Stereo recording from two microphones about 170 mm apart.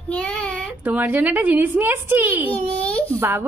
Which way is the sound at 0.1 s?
5° left (ahead or behind).